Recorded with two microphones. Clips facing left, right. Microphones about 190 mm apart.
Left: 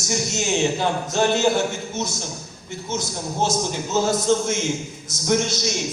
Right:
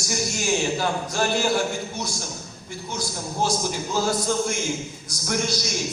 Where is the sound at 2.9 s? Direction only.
20° left (ahead or behind).